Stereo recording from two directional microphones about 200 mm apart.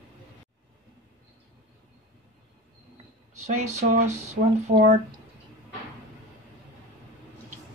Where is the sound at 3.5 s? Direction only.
35° right (ahead or behind).